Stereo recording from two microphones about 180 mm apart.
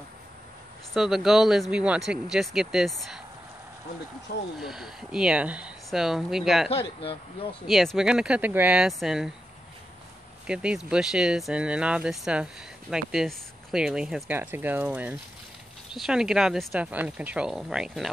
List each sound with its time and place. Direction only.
0.9 s speech: centre (ahead or behind)
4.6 s speech: centre (ahead or behind)
7.0 s speech: 30° left (ahead or behind)
7.6 s speech: centre (ahead or behind)
10.4 s speech: 5° right (ahead or behind)